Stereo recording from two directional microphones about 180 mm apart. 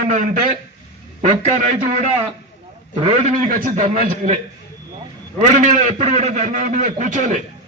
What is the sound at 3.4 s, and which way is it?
Speech, 50° right (ahead or behind).